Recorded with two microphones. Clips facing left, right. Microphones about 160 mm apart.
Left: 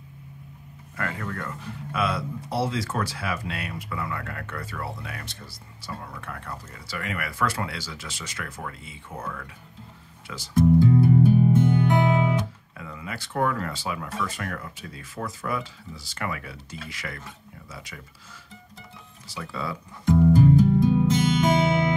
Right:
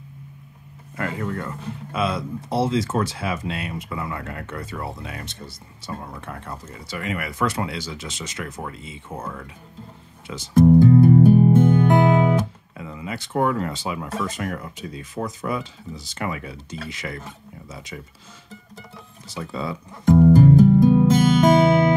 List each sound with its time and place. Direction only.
0.9 s speech: 20° right (ahead or behind)
10.5 s music: 45° right (ahead or behind)
12.7 s speech: 25° right (ahead or behind)
19.2 s speech: 20° right (ahead or behind)
20.1 s music: 50° right (ahead or behind)